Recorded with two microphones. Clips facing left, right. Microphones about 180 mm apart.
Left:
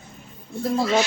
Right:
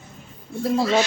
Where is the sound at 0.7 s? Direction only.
Centre (ahead or behind).